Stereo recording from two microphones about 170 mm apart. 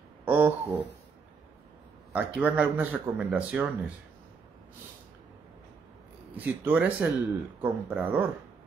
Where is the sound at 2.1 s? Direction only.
10° right (ahead or behind).